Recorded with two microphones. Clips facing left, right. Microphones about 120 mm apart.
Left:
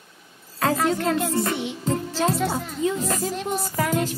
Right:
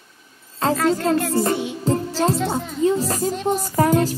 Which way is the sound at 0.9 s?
30° right (ahead or behind).